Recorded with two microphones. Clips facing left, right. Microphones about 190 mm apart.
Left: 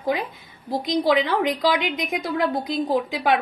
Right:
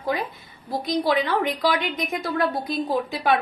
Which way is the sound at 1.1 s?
15° left (ahead or behind).